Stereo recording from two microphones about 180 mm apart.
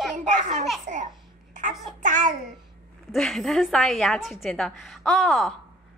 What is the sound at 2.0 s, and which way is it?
Child singing, 45° right (ahead or behind).